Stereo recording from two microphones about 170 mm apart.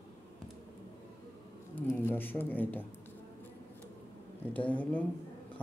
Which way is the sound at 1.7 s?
15° left (ahead or behind).